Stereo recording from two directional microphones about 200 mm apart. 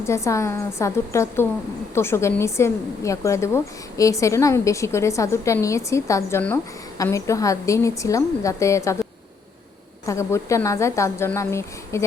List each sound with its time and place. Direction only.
0.0 s a woman's voice: 15° left (ahead or behind)
10.1 s a woman's voice: 15° left (ahead or behind)